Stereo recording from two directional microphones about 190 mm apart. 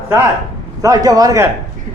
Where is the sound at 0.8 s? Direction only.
20° right (ahead or behind).